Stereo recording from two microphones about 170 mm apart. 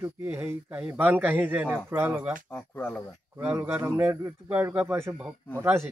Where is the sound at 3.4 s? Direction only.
10° right (ahead or behind).